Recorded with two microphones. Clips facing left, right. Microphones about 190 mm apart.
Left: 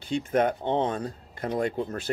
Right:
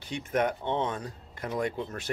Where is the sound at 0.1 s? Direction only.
30° left (ahead or behind).